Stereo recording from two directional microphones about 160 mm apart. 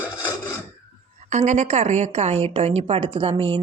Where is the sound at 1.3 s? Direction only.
45° right (ahead or behind).